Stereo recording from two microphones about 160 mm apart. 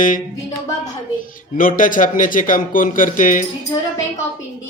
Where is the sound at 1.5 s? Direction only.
60° left (ahead or behind).